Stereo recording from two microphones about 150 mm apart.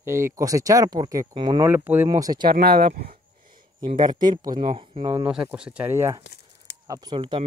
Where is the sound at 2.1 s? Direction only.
25° right (ahead or behind).